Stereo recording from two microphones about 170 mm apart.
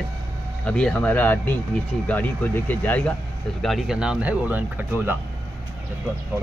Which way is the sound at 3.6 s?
Centre (ahead or behind).